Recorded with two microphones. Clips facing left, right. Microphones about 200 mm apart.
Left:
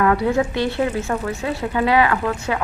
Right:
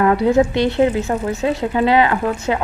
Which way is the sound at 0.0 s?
25° right (ahead or behind).